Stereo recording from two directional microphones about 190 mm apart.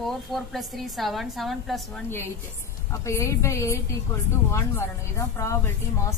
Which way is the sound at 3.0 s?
15° left (ahead or behind).